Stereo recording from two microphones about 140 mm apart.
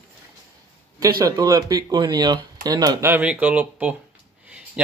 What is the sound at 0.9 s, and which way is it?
Speech, 25° right (ahead or behind).